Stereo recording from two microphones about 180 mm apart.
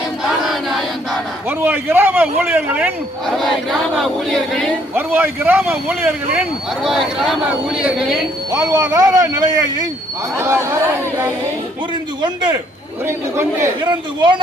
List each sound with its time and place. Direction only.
0.2 s speech: centre (ahead or behind)
4.9 s speech: 10° right (ahead or behind)
8.4 s speech: 15° right (ahead or behind)
12.2 s speech: 25° right (ahead or behind)
13.1 s speech: 15° right (ahead or behind)
13.8 s speech: 25° right (ahead or behind)